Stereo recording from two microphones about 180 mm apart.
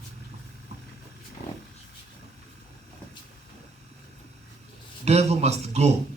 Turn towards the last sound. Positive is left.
turn(degrees=-35)  # may be behind; listen again after turning